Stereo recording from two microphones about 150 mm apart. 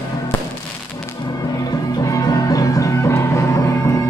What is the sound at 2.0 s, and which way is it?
Music, 25° left (ahead or behind).